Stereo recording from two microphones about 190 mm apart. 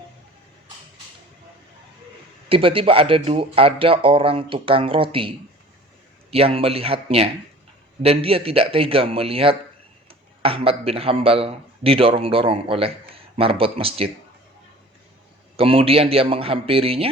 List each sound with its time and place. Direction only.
2.5 s speech: 30° right (ahead or behind)
6.3 s speech: 30° right (ahead or behind)
15.5 s speech: 30° right (ahead or behind)